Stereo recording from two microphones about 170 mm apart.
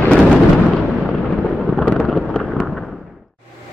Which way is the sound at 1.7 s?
Centre (ahead or behind).